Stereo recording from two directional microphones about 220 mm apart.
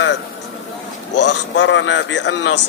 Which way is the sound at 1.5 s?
55° left (ahead or behind).